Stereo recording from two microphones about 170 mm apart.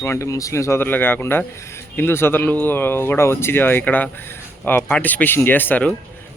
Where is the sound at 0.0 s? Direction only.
15° left (ahead or behind).